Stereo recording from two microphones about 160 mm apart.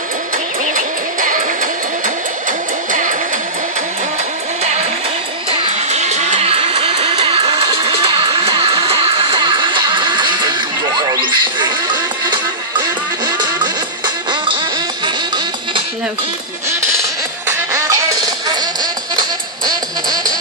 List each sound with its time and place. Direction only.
0.7 s music: 55° right (ahead or behind)
5.5 s music: 45° right (ahead or behind); by 14.6 s 30° right (ahead or behind)
17.5 s music: 15° right (ahead or behind)